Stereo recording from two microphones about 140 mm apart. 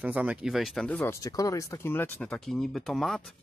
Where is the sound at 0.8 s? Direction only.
10° left (ahead or behind).